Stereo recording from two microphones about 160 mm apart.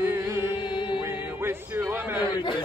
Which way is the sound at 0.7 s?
30° left (ahead or behind).